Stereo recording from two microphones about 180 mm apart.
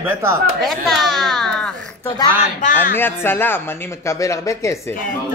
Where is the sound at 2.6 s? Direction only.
45° left (ahead or behind).